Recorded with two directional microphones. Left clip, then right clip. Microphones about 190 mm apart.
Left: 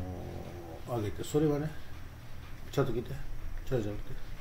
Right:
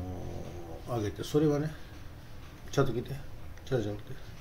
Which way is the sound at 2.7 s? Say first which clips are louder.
Right 2 dB; centre (ahead or behind).